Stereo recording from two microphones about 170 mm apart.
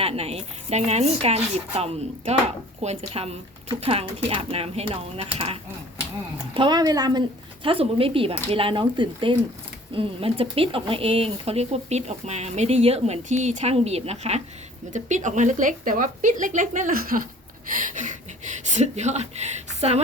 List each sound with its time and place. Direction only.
0.0 s speech: 35° right (ahead or behind)